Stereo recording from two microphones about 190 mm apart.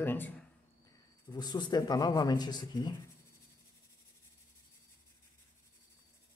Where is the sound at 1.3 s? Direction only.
20° left (ahead or behind).